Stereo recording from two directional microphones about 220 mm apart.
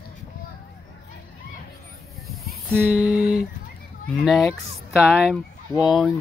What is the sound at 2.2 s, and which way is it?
Snake, centre (ahead or behind).